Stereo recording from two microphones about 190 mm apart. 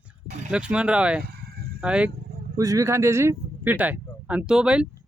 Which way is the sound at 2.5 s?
15° right (ahead or behind).